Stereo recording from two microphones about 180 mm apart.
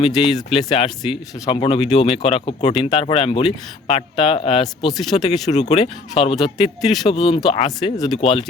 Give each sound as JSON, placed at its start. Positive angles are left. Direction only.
{"t": 0.0, "sound": "speech", "side_deg": 35}
{"t": 4.9, "sound": "speech", "side_deg": 0}
{"t": 5.5, "sound": "speech", "side_deg": 40}